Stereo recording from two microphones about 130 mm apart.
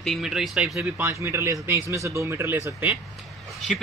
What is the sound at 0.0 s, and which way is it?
Speech, centre (ahead or behind).